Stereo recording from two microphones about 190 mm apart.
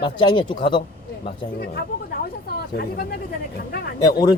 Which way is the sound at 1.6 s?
55° left (ahead or behind).